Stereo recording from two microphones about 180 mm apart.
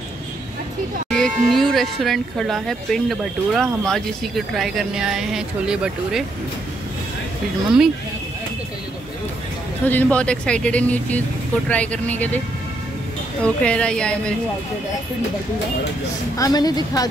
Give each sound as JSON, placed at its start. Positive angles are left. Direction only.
{"t": 1.1, "sound": "speech", "side_deg": 0}
{"t": 9.8, "sound": "speech", "side_deg": 10}
{"t": 13.4, "sound": "speech", "side_deg": 5}
{"t": 16.3, "sound": "a woman's voice", "side_deg": 20}